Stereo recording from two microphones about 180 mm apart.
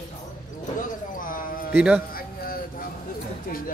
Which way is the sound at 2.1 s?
55° left (ahead or behind).